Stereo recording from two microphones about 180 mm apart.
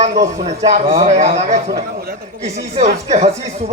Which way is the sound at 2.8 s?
40° right (ahead or behind).